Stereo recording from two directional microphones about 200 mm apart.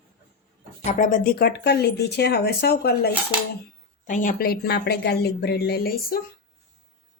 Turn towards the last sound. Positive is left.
turn(degrees=50)  # may be behind; listen again after turning